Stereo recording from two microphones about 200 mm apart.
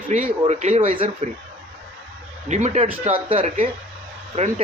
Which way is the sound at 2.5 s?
35° right (ahead or behind).